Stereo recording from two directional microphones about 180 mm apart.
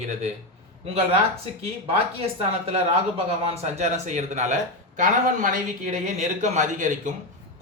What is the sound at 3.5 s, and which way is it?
A man's voice, 40° right (ahead or behind).